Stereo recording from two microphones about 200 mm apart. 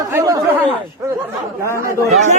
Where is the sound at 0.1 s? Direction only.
15° right (ahead or behind).